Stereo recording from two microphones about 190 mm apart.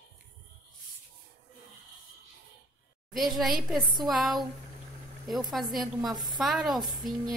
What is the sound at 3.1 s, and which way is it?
A woman's voice, centre (ahead or behind).